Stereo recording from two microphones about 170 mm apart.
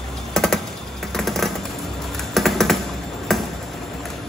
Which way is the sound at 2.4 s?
Centre (ahead or behind).